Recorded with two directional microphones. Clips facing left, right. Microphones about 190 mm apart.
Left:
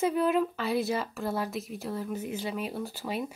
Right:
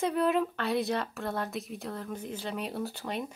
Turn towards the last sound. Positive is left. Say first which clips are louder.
# left 1 dB
turn(degrees=5)  # may be behind; listen again after turning